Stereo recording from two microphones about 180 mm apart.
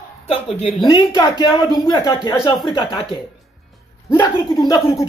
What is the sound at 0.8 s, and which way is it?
Speech, 20° left (ahead or behind).